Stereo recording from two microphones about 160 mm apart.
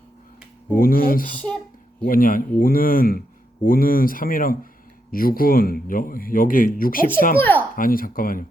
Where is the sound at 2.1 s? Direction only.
60° left (ahead or behind).